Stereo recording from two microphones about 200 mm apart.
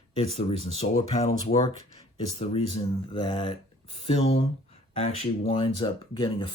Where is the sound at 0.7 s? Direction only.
30° left (ahead or behind).